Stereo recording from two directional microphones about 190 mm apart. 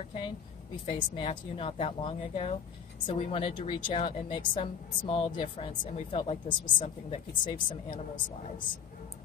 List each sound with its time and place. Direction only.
0.8 s a woman's voice: 30° left (ahead or behind)